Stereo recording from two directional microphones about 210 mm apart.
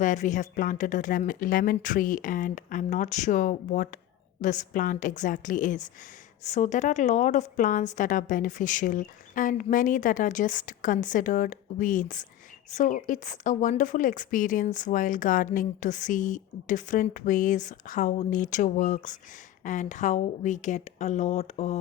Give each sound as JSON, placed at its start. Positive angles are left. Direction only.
{"t": 0.0, "sound": "a woman's voice", "side_deg": 35}